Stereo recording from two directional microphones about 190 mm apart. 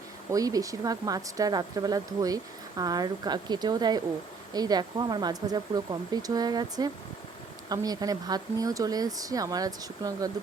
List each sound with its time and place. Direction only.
0.3 s speech: 20° right (ahead or behind)